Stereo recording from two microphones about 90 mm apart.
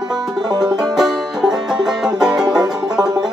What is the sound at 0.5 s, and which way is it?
Music, 50° right (ahead or behind).